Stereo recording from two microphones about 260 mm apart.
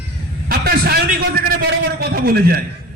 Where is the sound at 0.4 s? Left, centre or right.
Right.